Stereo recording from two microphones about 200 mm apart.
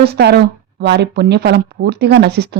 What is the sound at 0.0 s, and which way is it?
A woman's voice, 55° right (ahead or behind).